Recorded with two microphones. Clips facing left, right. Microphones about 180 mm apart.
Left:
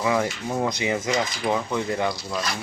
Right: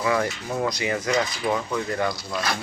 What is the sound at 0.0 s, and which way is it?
Speech, 20° left (ahead or behind).